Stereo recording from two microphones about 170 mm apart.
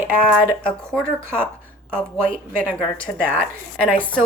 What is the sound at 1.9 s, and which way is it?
A woman's voice, 5° left (ahead or behind).